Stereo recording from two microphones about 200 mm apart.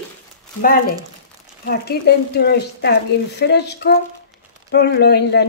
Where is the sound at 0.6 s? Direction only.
45° left (ahead or behind).